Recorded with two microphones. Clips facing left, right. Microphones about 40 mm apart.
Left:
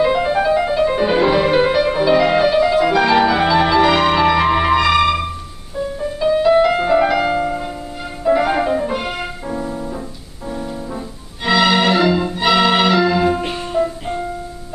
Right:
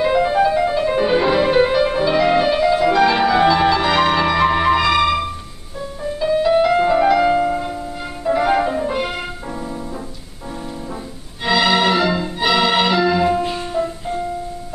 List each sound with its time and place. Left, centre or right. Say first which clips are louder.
0.0 s music: even; centre
11.4 s music: left 1 dB; centre
13.8 s music: left 4 dB; left